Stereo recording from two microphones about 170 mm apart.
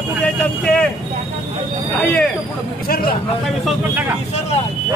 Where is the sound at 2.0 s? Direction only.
10° left (ahead or behind).